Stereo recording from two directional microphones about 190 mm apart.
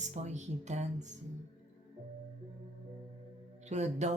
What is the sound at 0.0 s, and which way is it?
Speech, 35° right (ahead or behind).